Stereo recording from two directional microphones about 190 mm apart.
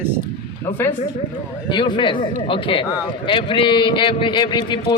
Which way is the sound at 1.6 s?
25° left (ahead or behind).